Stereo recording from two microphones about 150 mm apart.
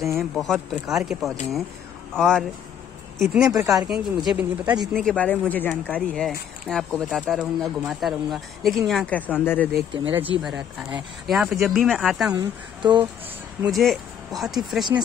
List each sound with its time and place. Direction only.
0.2 s speech: centre (ahead or behind)
4.9 s speech: 5° left (ahead or behind)
10.1 s speech: 10° right (ahead or behind)
12.8 s speech: 30° right (ahead or behind)
13.7 s speech: centre (ahead or behind)